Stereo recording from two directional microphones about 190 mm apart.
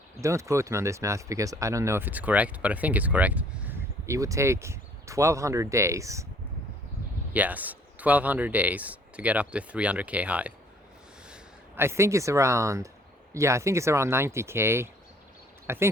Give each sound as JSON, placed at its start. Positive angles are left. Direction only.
{"t": 0.2, "sound": "speech", "side_deg": -15}
{"t": 7.3, "sound": "speech", "side_deg": -10}
{"t": 11.8, "sound": "speech", "side_deg": -15}